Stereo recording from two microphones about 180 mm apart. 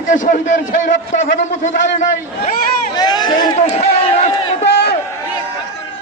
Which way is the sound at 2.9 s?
25° left (ahead or behind).